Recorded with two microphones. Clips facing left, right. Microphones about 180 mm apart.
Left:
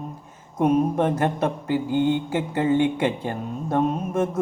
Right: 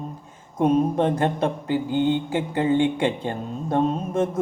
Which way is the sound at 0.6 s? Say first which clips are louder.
Even; 30° right (ahead or behind).